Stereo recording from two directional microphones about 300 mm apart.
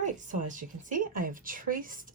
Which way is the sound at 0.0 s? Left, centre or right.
Right.